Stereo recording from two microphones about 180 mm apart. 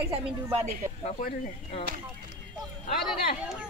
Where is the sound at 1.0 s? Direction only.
40° left (ahead or behind).